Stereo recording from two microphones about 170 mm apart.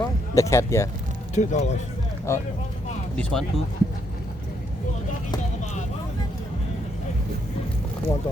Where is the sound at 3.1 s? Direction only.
5° left (ahead or behind).